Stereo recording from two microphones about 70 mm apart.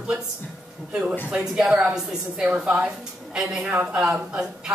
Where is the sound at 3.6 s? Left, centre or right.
Centre.